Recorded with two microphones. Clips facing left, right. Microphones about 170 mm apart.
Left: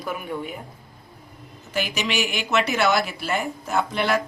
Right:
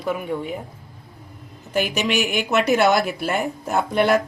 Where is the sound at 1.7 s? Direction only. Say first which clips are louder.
Right 4 dB; 50° right (ahead or behind).